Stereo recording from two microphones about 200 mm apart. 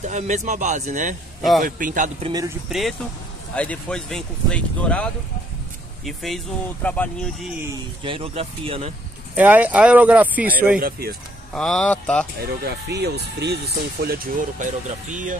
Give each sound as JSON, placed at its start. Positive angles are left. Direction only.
{"t": 0.0, "sound": "speech", "side_deg": -35}
{"t": 2.2, "sound": "speech", "side_deg": -20}
{"t": 3.5, "sound": "speech", "side_deg": 5}
{"t": 8.0, "sound": "speech", "side_deg": -25}
{"t": 9.3, "sound": "speech", "side_deg": -10}
{"t": 10.8, "sound": "speech", "side_deg": -45}
{"t": 11.5, "sound": "speech", "side_deg": 5}
{"t": 12.4, "sound": "speech", "side_deg": -55}